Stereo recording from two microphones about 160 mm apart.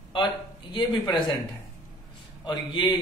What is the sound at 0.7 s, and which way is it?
Speech, 25° left (ahead or behind).